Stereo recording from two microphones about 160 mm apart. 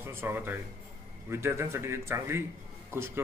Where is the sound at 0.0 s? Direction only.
15° right (ahead or behind).